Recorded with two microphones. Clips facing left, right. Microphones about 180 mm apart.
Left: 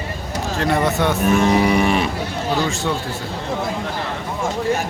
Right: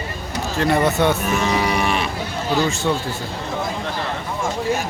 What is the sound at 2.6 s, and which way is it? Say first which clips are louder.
Speech: right 4 dB; centre (ahead or behind).